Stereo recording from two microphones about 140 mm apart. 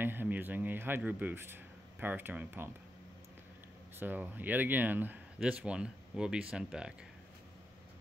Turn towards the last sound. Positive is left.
turn(degrees=-5)  # may be behind; listen again after turning